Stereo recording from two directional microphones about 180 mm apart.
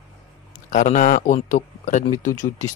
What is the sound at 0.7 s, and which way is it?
Speech, 45° left (ahead or behind).